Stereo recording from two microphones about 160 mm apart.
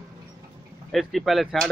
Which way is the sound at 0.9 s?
Centre (ahead or behind).